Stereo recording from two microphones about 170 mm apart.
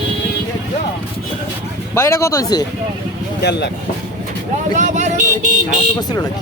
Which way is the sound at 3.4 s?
80° left.